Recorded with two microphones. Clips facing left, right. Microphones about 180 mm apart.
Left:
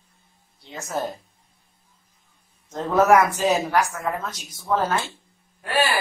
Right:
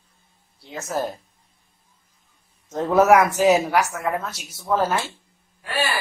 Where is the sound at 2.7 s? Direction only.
10° right (ahead or behind).